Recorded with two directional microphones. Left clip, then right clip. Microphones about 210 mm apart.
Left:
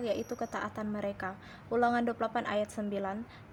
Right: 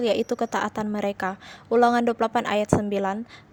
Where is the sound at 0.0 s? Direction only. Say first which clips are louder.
Right 11 dB; 35° right (ahead or behind).